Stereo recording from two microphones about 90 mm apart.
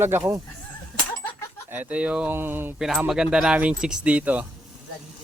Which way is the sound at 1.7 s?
15° right (ahead or behind).